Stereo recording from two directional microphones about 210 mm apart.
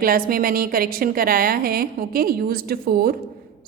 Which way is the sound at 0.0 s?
45° right (ahead or behind).